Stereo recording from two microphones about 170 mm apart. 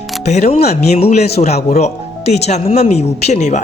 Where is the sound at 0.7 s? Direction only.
35° left (ahead or behind).